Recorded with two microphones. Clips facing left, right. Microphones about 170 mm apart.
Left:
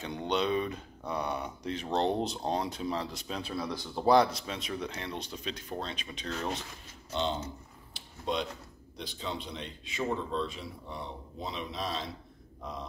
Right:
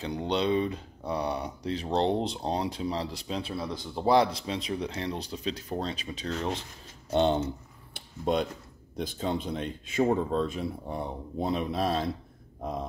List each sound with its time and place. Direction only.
0.0 s speech: 30° right (ahead or behind)
7.1 s speech: 55° right (ahead or behind)
7.9 s a sound: 50° right (ahead or behind)
8.9 s speech: 50° right (ahead or behind)